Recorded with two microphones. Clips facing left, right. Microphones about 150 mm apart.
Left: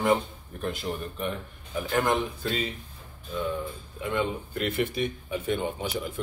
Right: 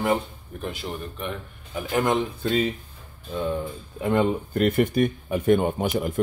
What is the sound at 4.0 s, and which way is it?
Speech, 45° right (ahead or behind).